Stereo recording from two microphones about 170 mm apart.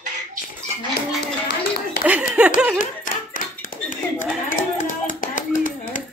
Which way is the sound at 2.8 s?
50° left (ahead or behind).